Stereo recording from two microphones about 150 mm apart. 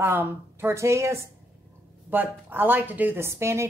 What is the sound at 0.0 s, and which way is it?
A woman's voice, 15° right (ahead or behind).